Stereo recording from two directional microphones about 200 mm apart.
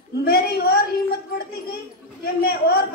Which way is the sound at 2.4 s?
50° left (ahead or behind).